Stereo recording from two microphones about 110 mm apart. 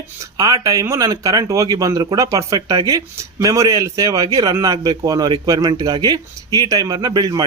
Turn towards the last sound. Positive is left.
turn(degrees=-35)  # may be behind; listen again after turning